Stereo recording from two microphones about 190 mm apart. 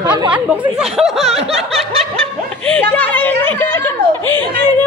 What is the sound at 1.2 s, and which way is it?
Speech, 35° right (ahead or behind).